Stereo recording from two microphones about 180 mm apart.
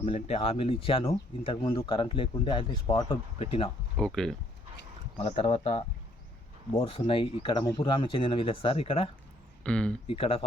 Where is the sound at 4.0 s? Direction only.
5° left (ahead or behind).